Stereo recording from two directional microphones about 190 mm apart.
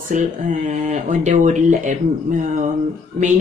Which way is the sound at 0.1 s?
40° right (ahead or behind).